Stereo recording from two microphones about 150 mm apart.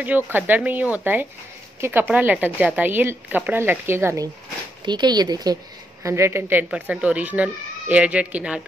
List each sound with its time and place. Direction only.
0.0 s speech: 10° right (ahead or behind)
4.8 s speech: 30° right (ahead or behind); by 8.6 s 10° right (ahead or behind)